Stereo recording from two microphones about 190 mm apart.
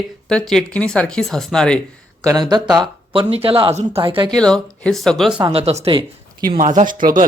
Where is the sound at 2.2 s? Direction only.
20° right (ahead or behind).